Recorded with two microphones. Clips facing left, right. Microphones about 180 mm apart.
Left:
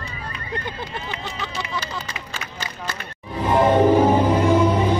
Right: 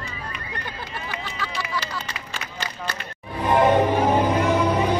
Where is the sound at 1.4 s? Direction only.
20° left (ahead or behind).